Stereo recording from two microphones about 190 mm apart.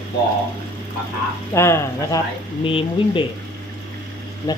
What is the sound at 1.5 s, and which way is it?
Speech, 15° left (ahead or behind).